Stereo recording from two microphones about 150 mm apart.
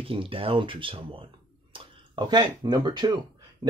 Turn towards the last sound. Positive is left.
turn(degrees=-30)  # may be behind; listen again after turning